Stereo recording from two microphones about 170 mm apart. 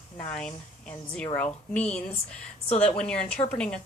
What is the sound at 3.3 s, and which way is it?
Speech, 45° left (ahead or behind).